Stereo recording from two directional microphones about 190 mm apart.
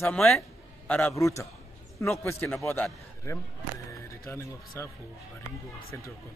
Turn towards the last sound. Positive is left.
turn(degrees=15)  # may be behind; listen again after turning